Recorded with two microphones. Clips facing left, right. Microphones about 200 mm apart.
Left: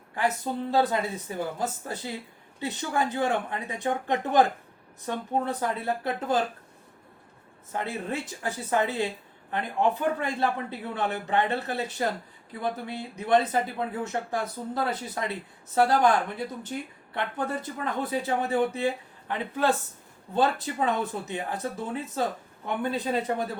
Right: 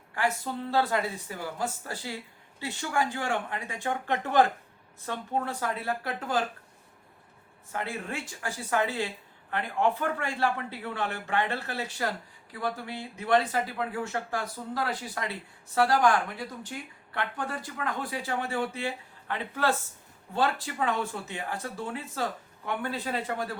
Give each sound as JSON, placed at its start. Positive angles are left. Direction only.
{"t": 0.2, "sound": "speech", "side_deg": 20}
{"t": 7.7, "sound": "speech", "side_deg": 20}
{"t": 17.2, "sound": "speech", "side_deg": 20}